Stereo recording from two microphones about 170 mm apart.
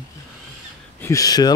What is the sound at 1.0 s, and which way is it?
Speech, 20° left (ahead or behind).